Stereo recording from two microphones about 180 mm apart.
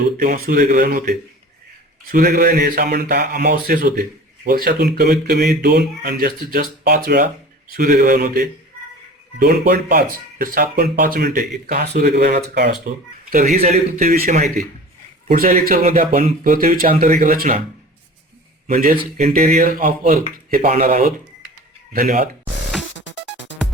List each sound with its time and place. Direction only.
0.2 s speech: 55° right (ahead or behind)
5.1 s speech: 50° right (ahead or behind)
5.6 s speech: 65° right (ahead or behind); by 11.2 s 45° right (ahead or behind)
11.2 s speech: 60° right (ahead or behind)
13.3 s speech: 45° right (ahead or behind)
18.7 s speech: 50° right (ahead or behind)
23.0 s music: 85° left